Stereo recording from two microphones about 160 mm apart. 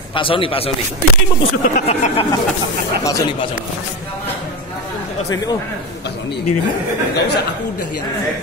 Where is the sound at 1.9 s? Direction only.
40° left (ahead or behind).